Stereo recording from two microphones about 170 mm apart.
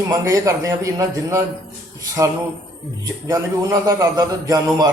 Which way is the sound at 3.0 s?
20° right (ahead or behind).